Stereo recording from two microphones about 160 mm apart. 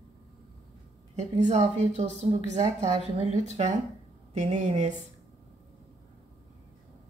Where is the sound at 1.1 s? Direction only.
45° right (ahead or behind).